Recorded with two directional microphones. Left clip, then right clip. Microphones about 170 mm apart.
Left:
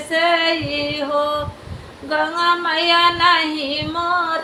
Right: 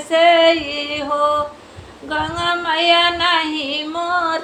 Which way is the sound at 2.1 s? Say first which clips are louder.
Left 2 dB; 10° right (ahead or behind).